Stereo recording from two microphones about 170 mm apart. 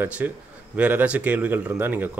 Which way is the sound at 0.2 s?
10° right (ahead or behind).